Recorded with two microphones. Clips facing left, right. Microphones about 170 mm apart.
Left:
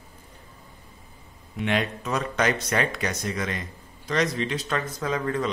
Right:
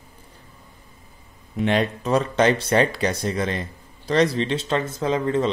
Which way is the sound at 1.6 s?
35° right (ahead or behind).